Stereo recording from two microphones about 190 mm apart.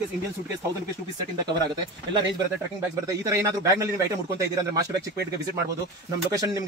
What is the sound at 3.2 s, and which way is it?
Speech, 15° right (ahead or behind).